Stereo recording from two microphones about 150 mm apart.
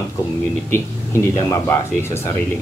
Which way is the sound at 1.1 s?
20° left (ahead or behind).